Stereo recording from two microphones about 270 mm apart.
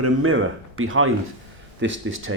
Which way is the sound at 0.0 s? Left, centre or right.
Right.